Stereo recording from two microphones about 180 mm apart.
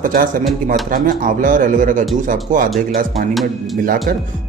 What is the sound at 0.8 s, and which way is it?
Speech, 50° right (ahead or behind).